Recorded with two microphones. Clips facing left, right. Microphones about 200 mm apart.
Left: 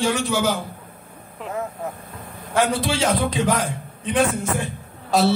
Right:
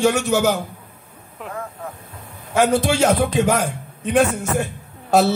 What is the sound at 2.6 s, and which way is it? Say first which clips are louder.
A man's voice: right 4 dB; 45° right (ahead or behind).